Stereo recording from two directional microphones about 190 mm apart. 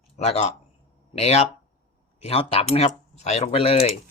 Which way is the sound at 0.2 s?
35° left (ahead or behind).